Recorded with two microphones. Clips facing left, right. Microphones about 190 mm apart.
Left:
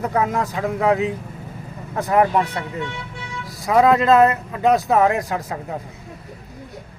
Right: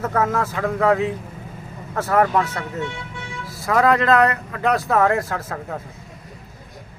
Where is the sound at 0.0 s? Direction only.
15° left (ahead or behind).